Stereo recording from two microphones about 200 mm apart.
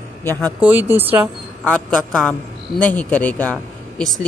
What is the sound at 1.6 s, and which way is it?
A man's voice, 5° left (ahead or behind).